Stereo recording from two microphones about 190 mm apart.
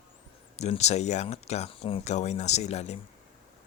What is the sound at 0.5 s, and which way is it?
Speech, 35° left (ahead or behind).